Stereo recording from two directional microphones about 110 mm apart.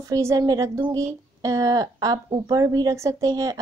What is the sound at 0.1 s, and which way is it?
A woman's voice, 30° right (ahead or behind).